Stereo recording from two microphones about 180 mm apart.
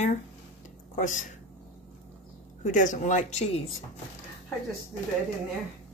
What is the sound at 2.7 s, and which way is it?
Speech, 45° left (ahead or behind).